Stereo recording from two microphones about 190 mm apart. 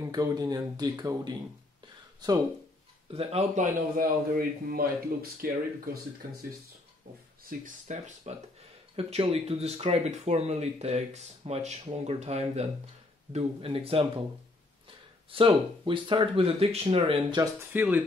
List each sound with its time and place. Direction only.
0.0 s speech: 20° right (ahead or behind)
3.1 s a man's voice: 30° right (ahead or behind); by 5.5 s 50° right (ahead or behind)
7.4 s a man's voice: 45° right (ahead or behind)
8.3 s speech: 35° right (ahead or behind)
15.3 s speech: 25° right (ahead or behind)
17.4 s speech: 10° right (ahead or behind)